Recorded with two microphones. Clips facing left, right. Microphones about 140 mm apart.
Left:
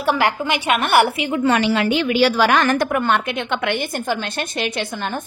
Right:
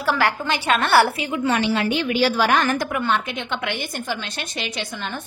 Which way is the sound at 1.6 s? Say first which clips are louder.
Left 3 dB; 90° left.